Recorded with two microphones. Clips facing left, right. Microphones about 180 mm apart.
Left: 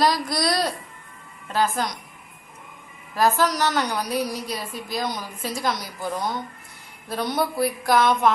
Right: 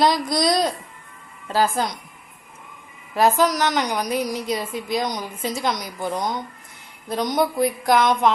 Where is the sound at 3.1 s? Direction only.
20° right (ahead or behind).